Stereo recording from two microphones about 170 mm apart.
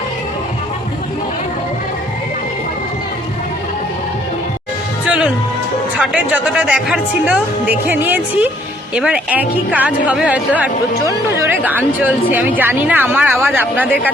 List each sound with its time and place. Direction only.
5.0 s music: 5° right (ahead or behind)
6.0 s speech: 10° right (ahead or behind)